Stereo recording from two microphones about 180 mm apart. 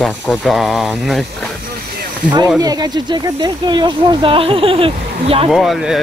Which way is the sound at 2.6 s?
20° right (ahead or behind).